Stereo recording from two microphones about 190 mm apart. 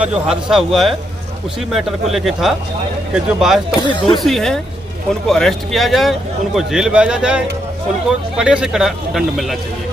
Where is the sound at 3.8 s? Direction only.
25° left (ahead or behind).